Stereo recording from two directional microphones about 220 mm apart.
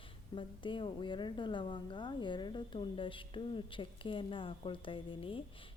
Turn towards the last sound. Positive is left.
turn(degrees=25)  # may be behind; listen again after turning